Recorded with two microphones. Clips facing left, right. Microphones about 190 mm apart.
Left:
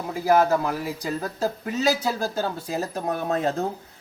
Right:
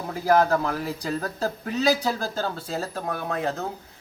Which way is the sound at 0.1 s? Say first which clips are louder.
Left 1 dB; 10° left (ahead or behind).